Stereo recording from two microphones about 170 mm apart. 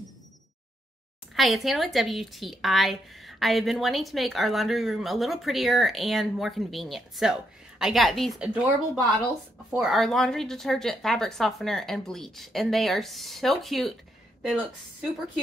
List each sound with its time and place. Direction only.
1.3 s speech: centre (ahead or behind)
9.7 s speech: centre (ahead or behind)